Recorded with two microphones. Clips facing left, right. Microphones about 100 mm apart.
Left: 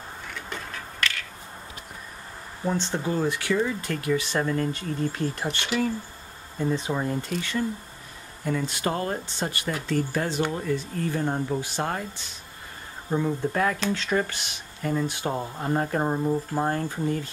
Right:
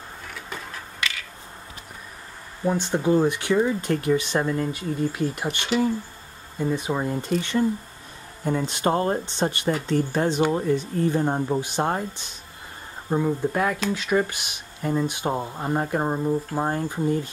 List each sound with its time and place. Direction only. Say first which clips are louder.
2.6 s speech: right 4 dB; 15° right (ahead or behind)
13.1 s speech: right 2 dB; 15° right (ahead or behind)